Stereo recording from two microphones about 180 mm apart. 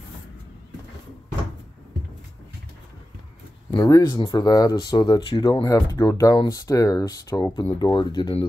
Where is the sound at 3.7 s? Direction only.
20° left (ahead or behind).